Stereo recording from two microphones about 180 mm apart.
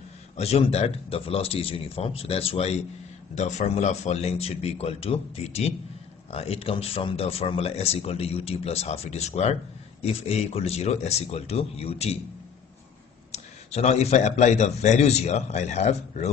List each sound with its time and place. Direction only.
0.4 s speech: 35° left (ahead or behind)
13.3 s speech: 35° left (ahead or behind)